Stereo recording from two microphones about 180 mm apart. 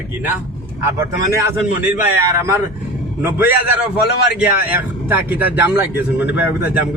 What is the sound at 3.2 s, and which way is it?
Speech, 10° right (ahead or behind).